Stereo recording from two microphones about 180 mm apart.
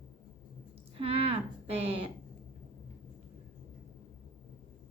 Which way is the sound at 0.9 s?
30° right (ahead or behind).